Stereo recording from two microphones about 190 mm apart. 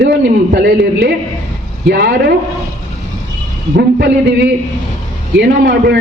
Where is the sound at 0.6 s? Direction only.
55° right (ahead or behind).